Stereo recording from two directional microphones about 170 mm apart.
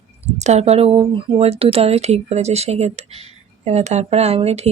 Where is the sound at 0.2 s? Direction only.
40° right (ahead or behind).